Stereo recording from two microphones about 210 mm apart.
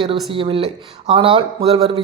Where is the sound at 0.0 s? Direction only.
25° right (ahead or behind).